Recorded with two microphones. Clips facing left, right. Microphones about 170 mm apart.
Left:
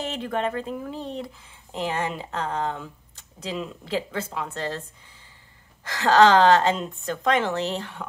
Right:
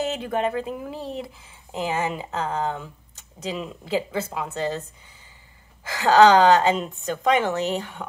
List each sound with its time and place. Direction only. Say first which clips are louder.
0.0 s speech: right 3 dB; 5° right (ahead or behind)
5.9 s a woman's voice: right 2 dB; 5° right (ahead or behind)